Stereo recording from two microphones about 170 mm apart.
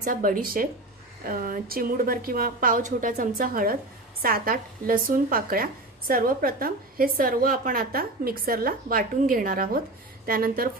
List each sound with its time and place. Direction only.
0.0 s a woman's voice: 55° right (ahead or behind)